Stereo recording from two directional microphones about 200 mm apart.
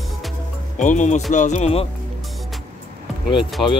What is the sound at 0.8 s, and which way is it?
Speech, 40° left (ahead or behind).